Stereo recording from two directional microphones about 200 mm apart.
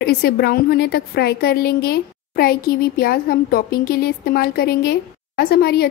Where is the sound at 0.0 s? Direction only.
50° left (ahead or behind).